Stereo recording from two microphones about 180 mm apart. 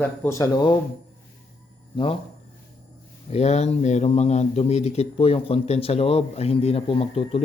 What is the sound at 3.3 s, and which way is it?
Speech, 35° left (ahead or behind).